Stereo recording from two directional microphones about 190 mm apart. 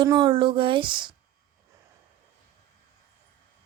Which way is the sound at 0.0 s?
20° right (ahead or behind).